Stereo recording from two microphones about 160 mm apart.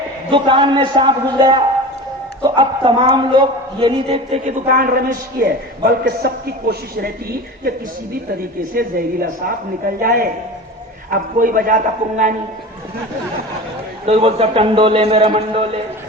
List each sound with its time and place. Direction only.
0.3 s a man's voice: 30° right (ahead or behind)
4.4 s a man's voice: 60° right (ahead or behind)
8.7 s a man's voice: 65° right (ahead or behind)
14.1 s a man's voice: 40° right (ahead or behind)